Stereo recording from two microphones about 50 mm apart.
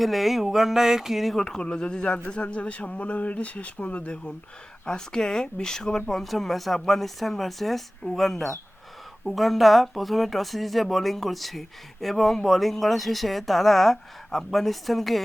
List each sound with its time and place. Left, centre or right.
0.0 s speech: centre
1.4 s speech: centre
4.9 s speech: centre